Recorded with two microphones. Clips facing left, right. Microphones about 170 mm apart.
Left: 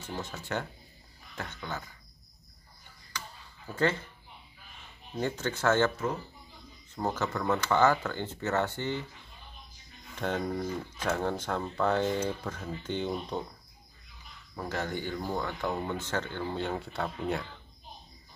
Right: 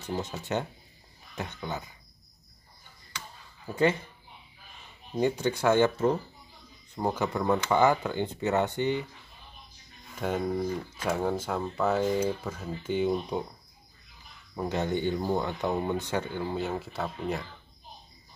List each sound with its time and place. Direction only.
0.1 s speech: 20° right (ahead or behind)
3.6 s speech: 15° right (ahead or behind)
5.1 s speech: 15° right (ahead or behind)
7.0 s speech: 15° right (ahead or behind)
10.1 s speech: 10° right (ahead or behind)
14.5 s speech: 20° right (ahead or behind); by 17.5 s centre (ahead or behind)